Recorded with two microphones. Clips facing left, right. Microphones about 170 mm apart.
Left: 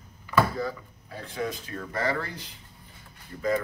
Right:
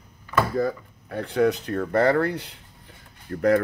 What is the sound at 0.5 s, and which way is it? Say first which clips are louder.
Speech: right 7 dB; 55° right (ahead or behind).